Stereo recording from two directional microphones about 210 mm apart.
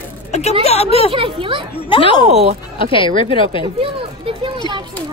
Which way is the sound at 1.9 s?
25° left (ahead or behind).